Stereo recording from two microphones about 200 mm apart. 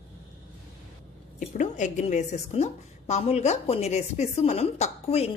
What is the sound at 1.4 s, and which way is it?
A woman's voice, 40° left (ahead or behind).